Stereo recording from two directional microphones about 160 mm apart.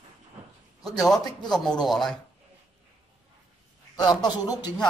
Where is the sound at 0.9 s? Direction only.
Centre (ahead or behind).